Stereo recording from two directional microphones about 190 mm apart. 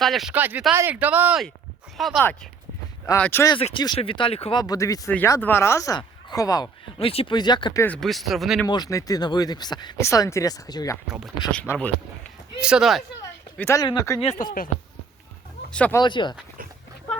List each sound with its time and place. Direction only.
0.0 s speech: centre (ahead or behind)
3.2 s speech: 10° left (ahead or behind)
3.5 s speech: 25° left (ahead or behind)
4.6 s speech: 20° left (ahead or behind)
8.0 s speech: centre (ahead or behind)
8.6 s speech: 20° left (ahead or behind)
12.6 s speech: 5° right (ahead or behind)
13.6 s speech: 15° left (ahead or behind)
14.2 s speech: 35° left (ahead or behind)
15.7 s speech: 5° left (ahead or behind)
16.0 s speech: 25° left (ahead or behind)